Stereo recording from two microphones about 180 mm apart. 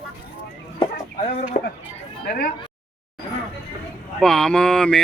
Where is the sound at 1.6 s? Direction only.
40° left (ahead or behind).